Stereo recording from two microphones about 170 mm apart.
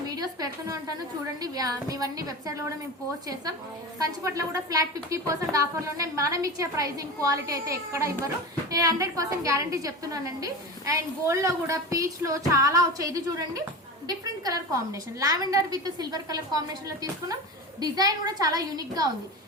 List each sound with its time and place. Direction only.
0.2 s a woman's voice: 20° right (ahead or behind)
3.9 s a woman's voice: 20° right (ahead or behind)